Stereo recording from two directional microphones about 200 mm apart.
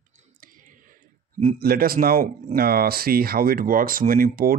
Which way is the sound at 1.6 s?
50° right (ahead or behind).